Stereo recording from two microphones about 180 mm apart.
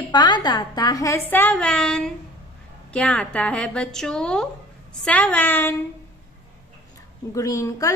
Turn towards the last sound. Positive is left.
turn(degrees=15)  # may be behind; listen again after turning